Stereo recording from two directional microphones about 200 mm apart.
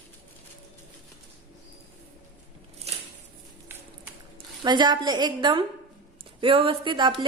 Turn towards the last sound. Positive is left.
turn(degrees=-25)  # may be behind; listen again after turning